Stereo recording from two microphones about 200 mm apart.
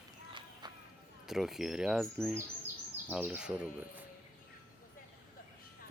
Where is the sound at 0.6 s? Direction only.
20° right (ahead or behind).